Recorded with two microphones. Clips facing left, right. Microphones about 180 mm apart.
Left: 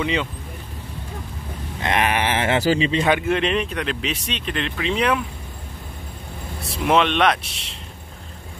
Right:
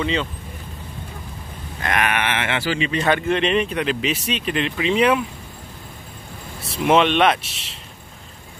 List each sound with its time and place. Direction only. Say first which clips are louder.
0.0 s speech: even; 10° left (ahead or behind)
1.8 s speech: left 1 dB; 25° left (ahead or behind)
3.0 s speech: even; 10° left (ahead or behind)
6.6 s speech: right 2 dB; centre (ahead or behind)